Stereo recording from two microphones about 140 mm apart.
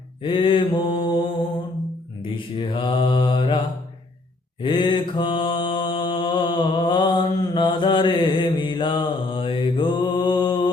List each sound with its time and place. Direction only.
0.2 s mantra: 35° left (ahead or behind)
2.3 s mantra: 35° left (ahead or behind)
4.6 s mantra: 35° left (ahead or behind)